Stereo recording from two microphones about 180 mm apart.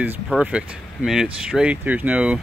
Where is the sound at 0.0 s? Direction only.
10° right (ahead or behind).